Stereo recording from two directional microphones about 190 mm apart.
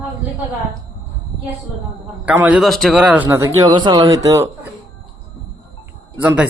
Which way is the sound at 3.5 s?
20° right (ahead or behind).